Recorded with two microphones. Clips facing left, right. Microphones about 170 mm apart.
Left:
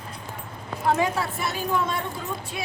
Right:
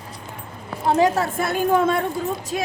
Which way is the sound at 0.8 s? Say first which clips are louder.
Right 5 dB; 35° right (ahead or behind).